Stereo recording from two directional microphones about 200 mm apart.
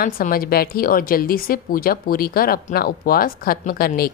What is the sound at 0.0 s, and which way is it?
A woman's voice, 45° left (ahead or behind).